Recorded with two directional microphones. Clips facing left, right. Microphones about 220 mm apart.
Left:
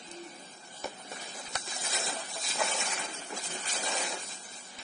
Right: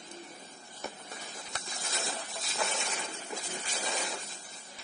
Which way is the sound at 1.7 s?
Centre (ahead or behind).